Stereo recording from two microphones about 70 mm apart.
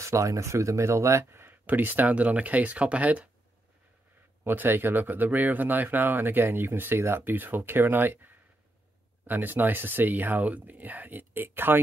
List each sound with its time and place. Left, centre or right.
0.0 s speech: right; by 3.3 s centre
4.5 s speech: right